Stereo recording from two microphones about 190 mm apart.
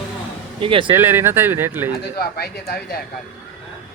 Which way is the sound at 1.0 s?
10° right (ahead or behind).